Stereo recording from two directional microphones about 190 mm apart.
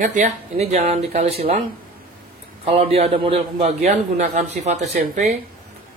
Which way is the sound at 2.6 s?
30° right (ahead or behind).